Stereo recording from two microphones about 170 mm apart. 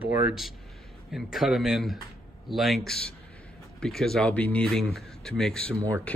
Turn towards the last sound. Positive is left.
turn(degrees=-20)  # may be behind; listen again after turning